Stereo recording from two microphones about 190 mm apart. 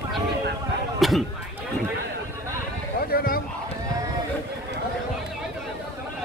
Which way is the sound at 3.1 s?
50° left (ahead or behind).